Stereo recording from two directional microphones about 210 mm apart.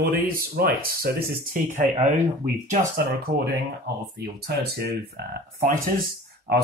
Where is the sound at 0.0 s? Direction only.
45° right (ahead or behind).